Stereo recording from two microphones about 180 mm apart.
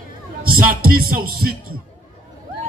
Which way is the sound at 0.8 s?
55° right (ahead or behind).